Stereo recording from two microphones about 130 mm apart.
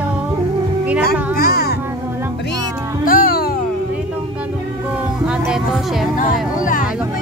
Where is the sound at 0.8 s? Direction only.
10° right (ahead or behind).